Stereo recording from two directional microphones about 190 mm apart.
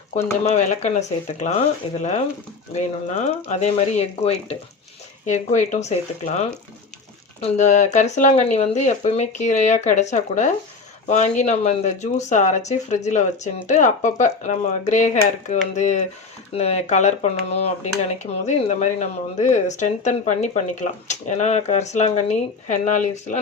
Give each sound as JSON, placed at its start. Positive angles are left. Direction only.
{"t": 0.4, "sound": "speech", "side_deg": 35}
{"t": 3.5, "sound": "speech", "side_deg": 35}